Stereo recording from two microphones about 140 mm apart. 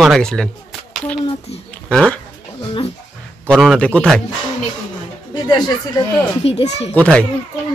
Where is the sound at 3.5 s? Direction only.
5° left (ahead or behind).